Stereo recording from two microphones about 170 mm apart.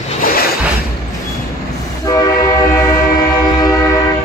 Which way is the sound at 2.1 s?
20° left (ahead or behind).